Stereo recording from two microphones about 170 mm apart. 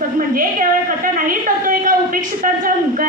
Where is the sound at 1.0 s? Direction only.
55° right (ahead or behind).